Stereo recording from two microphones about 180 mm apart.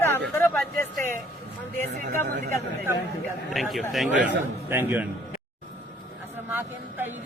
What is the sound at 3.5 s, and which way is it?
Speech, centre (ahead or behind).